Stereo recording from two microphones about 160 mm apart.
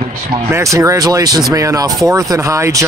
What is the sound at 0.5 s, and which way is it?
Speech, 15° right (ahead or behind).